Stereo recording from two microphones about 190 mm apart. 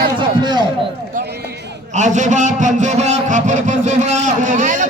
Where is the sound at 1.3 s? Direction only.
60° right (ahead or behind).